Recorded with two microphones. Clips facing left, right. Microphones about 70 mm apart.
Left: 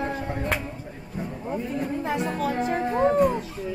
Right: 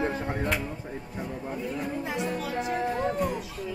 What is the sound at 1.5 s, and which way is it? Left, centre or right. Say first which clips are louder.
Music: left 5 dB; left.